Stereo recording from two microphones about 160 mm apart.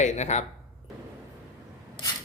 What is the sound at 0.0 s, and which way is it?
Speech, 45° left (ahead or behind).